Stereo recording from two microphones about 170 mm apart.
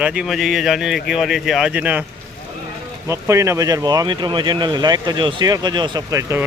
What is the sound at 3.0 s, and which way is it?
Speech, 15° right (ahead or behind).